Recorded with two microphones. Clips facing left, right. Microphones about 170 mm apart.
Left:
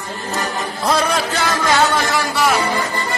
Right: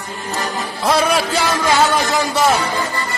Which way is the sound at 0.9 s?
10° right (ahead or behind).